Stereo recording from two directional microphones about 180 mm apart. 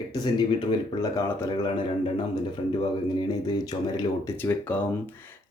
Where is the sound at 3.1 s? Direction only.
20° left (ahead or behind).